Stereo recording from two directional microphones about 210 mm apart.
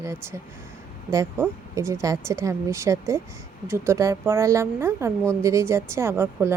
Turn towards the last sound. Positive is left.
turn(degrees=-10)  # may be behind; listen again after turning